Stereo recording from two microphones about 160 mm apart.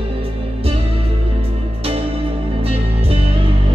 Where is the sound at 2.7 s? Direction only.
35° right (ahead or behind).